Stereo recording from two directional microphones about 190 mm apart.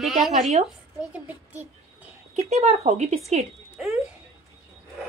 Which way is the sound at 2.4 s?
35° right (ahead or behind).